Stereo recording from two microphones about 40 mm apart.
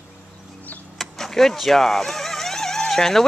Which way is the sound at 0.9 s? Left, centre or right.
Centre.